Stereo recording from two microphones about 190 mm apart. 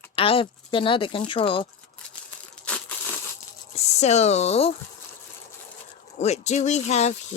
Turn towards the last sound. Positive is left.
turn(degrees=35)  # may be behind; listen again after turning